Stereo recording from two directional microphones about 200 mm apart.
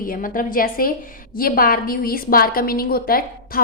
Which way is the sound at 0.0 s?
45° left (ahead or behind).